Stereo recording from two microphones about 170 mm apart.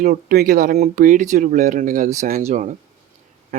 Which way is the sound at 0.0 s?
55° right (ahead or behind).